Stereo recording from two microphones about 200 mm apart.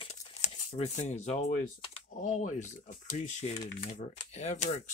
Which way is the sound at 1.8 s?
35° left (ahead or behind).